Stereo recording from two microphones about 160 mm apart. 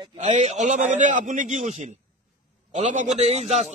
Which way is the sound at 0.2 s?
45° right (ahead or behind).